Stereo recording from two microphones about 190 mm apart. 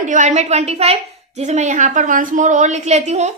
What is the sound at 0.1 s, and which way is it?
A woman's voice, 40° right (ahead or behind).